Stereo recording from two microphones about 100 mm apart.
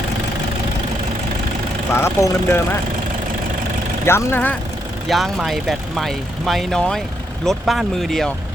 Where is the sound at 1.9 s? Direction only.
25° left (ahead or behind).